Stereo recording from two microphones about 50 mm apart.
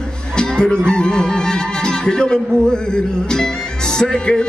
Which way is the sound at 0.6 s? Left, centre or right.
Centre.